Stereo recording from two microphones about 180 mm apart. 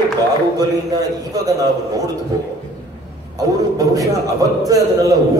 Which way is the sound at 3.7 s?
20° right (ahead or behind).